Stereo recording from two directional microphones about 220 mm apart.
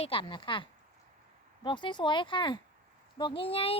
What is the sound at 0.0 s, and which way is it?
Speech, 25° left (ahead or behind).